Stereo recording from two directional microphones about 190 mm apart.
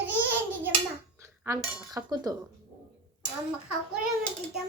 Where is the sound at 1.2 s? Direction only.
15° right (ahead or behind).